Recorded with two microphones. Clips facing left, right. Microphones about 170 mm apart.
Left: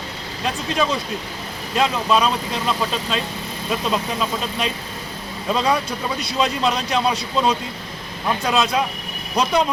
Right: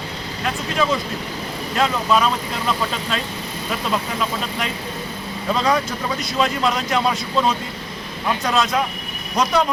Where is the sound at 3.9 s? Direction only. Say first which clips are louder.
Even; 20° left (ahead or behind).